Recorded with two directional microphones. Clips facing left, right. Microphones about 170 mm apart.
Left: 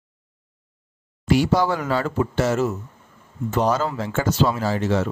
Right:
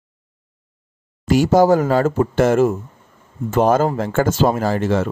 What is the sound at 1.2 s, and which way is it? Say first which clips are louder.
Speech: right 5 dB; 45° right (ahead or behind).